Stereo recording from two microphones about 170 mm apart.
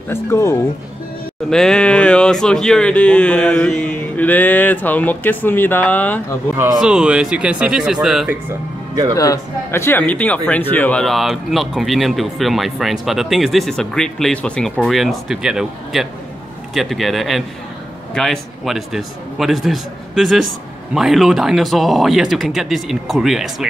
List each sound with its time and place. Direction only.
0.1 s speech: 15° left (ahead or behind)
1.5 s speech: 5° left (ahead or behind)
6.8 s speech: 5° right (ahead or behind)
8.5 s speech: 20° right (ahead or behind)
9.1 s speech: 20° left (ahead or behind); by 23.7 s centre (ahead or behind)